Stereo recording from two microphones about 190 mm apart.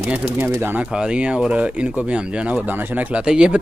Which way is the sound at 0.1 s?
10° right (ahead or behind).